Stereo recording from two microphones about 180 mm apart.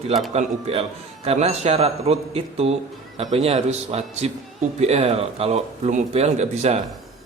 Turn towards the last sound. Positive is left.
turn(degrees=-35)  # may be behind; listen again after turning